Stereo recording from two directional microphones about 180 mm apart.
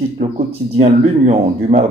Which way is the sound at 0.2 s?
35° right (ahead or behind).